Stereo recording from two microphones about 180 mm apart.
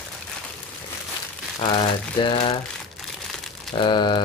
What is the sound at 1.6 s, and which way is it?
Speech, 25° left (ahead or behind).